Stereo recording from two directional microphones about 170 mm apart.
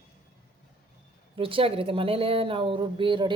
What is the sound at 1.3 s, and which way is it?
Speech, 30° right (ahead or behind).